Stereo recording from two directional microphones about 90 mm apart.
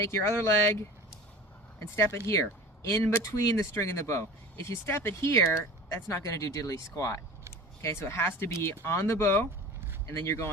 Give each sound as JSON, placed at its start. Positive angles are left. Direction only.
{"t": 0.0, "sound": "speech", "side_deg": 30}